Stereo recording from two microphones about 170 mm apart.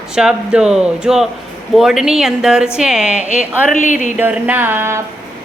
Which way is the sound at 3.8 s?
50° left (ahead or behind).